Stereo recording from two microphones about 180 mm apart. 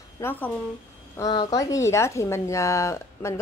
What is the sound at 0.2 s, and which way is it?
Speech, 10° left (ahead or behind).